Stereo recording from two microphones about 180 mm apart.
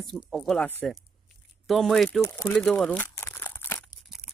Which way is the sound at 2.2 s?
15° left (ahead or behind).